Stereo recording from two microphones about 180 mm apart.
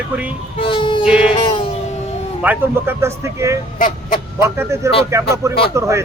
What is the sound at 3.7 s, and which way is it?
Speech, 50° left (ahead or behind).